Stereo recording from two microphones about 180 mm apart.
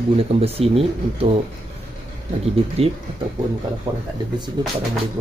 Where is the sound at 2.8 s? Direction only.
35° right (ahead or behind).